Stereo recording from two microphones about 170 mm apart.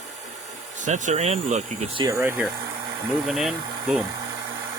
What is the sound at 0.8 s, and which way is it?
Speech, 45° right (ahead or behind).